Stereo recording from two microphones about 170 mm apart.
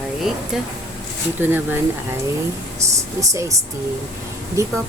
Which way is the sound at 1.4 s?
10° right (ahead or behind).